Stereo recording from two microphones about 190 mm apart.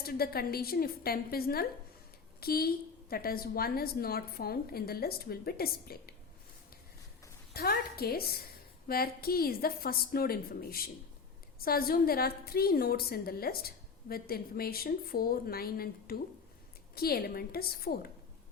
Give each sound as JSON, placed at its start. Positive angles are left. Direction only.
{"t": 0.0, "sound": "a woman's voice", "side_deg": 50}
{"t": 7.5, "sound": "a woman's voice", "side_deg": 55}